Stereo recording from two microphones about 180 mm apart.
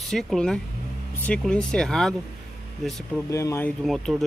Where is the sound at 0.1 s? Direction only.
Centre (ahead or behind).